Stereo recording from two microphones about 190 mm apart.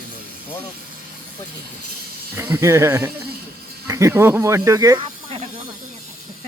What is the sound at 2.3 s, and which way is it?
Speech, 15° right (ahead or behind).